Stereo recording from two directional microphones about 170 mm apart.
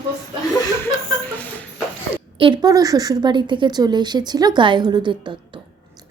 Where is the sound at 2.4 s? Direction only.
25° right (ahead or behind).